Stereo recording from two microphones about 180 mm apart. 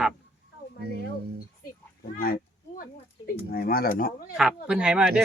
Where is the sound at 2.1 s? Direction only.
55° left (ahead or behind).